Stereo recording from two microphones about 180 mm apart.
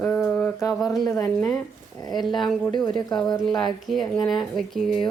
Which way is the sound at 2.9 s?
25° left (ahead or behind).